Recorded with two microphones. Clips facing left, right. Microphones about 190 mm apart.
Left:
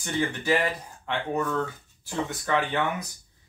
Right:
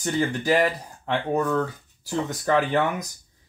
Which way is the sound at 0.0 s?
40° right (ahead or behind).